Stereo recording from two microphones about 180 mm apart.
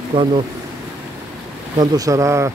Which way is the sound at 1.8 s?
20° right (ahead or behind).